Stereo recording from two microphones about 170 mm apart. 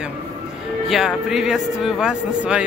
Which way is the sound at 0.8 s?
Centre (ahead or behind).